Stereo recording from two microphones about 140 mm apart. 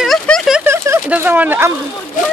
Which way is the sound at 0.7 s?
15° right (ahead or behind).